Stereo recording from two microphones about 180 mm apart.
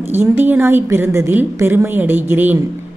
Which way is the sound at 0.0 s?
15° right (ahead or behind).